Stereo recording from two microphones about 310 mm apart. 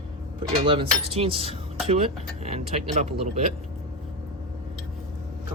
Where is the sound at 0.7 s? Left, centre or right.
Centre.